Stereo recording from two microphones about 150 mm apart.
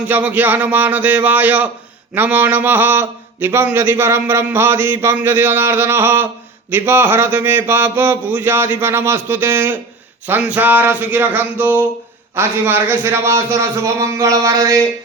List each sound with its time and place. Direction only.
0.1 s a man's voice: 10° right (ahead or behind)